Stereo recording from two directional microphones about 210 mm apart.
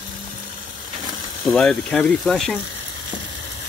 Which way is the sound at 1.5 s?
5° left (ahead or behind).